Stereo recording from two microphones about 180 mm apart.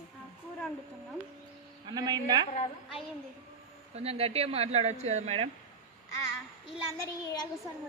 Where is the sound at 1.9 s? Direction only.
20° right (ahead or behind).